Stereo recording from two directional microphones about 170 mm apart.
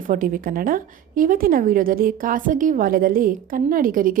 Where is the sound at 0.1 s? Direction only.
50° right (ahead or behind).